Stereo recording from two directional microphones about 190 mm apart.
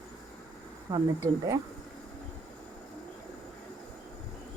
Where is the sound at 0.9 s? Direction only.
15° right (ahead or behind).